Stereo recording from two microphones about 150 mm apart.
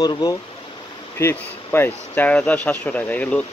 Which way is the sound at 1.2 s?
15° left (ahead or behind).